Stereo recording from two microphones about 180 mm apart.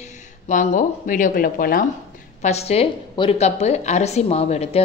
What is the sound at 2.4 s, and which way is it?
A woman's voice, 35° left (ahead or behind).